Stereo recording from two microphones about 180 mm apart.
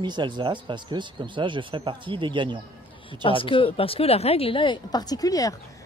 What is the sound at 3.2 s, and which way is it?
Speech, 30° left (ahead or behind).